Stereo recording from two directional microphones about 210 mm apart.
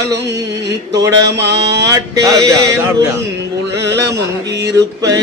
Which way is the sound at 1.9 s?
15° right (ahead or behind).